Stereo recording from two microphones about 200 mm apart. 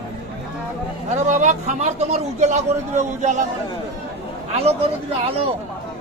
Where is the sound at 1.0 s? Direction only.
35° right (ahead or behind).